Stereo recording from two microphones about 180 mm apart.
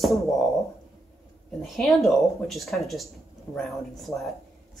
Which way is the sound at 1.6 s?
Centre (ahead or behind).